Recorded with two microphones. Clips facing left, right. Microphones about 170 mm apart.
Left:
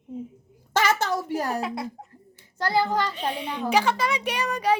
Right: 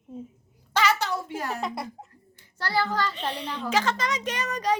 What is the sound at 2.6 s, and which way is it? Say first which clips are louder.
Speech: left 3 dB; 20° left (ahead or behind).